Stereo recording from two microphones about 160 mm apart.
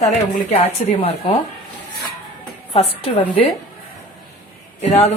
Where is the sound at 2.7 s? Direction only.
40° left (ahead or behind).